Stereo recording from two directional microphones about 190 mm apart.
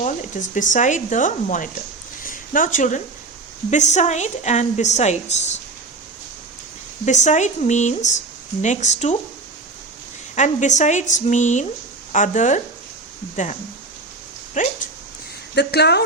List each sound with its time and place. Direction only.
0.0 s a woman's voice: 40° left (ahead or behind)
2.2 s a sound: 45° left (ahead or behind)
3.7 s a woman's voice: 40° left (ahead or behind)
7.0 s a woman's voice: 40° left (ahead or behind)
10.3 s a woman's voice: 40° left (ahead or behind)
15.5 s speech: 60° left (ahead or behind)